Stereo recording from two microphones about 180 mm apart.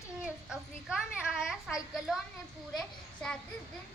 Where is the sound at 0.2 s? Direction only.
5° right (ahead or behind).